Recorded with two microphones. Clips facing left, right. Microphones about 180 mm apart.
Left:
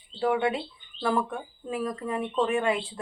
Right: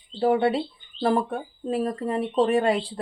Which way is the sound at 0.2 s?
35° right (ahead or behind).